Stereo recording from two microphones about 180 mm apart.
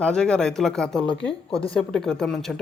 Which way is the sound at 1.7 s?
5° left (ahead or behind).